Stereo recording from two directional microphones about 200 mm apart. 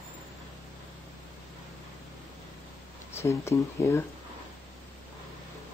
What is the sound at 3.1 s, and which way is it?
Speech, 15° left (ahead or behind).